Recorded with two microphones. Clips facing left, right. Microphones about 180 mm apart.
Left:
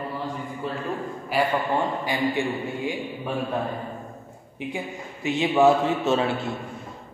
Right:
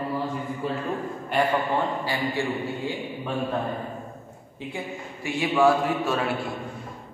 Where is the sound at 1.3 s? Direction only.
5° left (ahead or behind).